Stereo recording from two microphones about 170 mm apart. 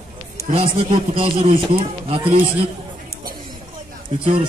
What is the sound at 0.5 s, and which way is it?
A man's voice, 35° right (ahead or behind).